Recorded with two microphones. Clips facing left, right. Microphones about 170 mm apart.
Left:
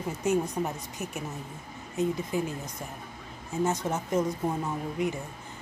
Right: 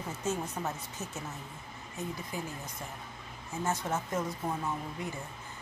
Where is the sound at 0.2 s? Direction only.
15° left (ahead or behind).